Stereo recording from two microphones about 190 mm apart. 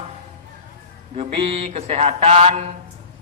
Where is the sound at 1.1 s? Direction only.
30° right (ahead or behind).